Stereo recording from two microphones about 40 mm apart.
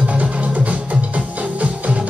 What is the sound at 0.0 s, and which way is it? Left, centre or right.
Music, right.